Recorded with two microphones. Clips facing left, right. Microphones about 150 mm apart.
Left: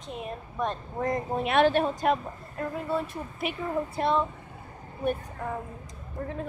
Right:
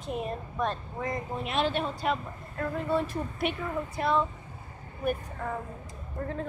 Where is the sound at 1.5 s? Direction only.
60° left (ahead or behind).